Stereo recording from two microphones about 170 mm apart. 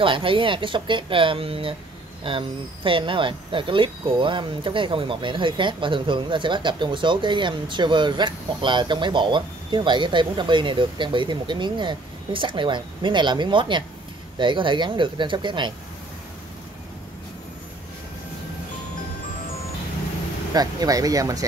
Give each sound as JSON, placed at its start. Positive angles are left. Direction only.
{"t": 0.0, "sound": "speech", "side_deg": -30}
{"t": 20.5, "sound": "speech", "side_deg": -20}